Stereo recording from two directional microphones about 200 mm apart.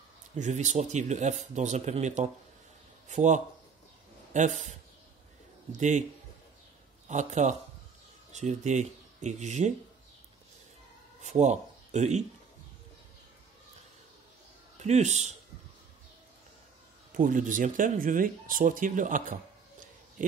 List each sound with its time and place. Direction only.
0.4 s speech: 35° right (ahead or behind)
7.1 s speech: 35° right (ahead or behind)
11.1 s speech: 35° right (ahead or behind)
14.8 s speech: 35° right (ahead or behind)
17.1 s speech: 40° right (ahead or behind)